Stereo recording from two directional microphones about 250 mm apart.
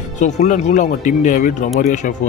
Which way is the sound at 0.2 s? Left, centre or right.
Left.